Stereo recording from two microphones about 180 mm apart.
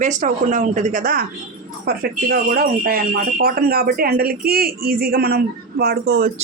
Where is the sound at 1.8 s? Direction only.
60° right (ahead or behind).